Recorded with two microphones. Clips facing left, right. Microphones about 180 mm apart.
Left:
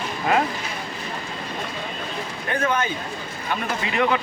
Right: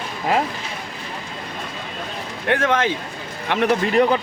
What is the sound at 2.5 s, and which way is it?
Speech, 90° right.